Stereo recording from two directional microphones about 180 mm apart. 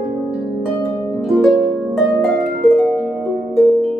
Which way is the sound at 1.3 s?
Centre (ahead or behind).